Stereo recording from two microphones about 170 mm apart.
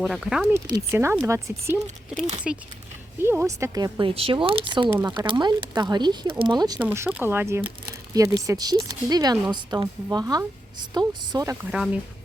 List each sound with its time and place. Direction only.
0.0 s speech: centre (ahead or behind)
0.5 s speech: 15° right (ahead or behind)
2.5 s speech: 5° right (ahead or behind)
3.2 s speech: 15° right (ahead or behind)
4.1 s speech: 35° right (ahead or behind)
4.9 s speech: 15° right (ahead or behind)
5.1 s speech: 30° right (ahead or behind)
6.7 s speech: 10° right (ahead or behind)